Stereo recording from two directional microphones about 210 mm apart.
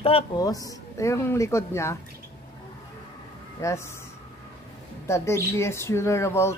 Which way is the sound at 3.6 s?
15° left (ahead or behind).